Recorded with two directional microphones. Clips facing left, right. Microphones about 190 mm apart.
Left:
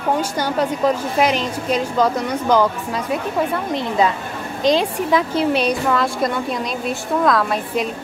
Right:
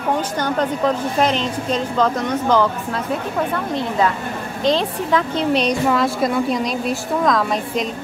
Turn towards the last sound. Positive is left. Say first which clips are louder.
# even
turn(degrees=5)  # may be behind; listen again after turning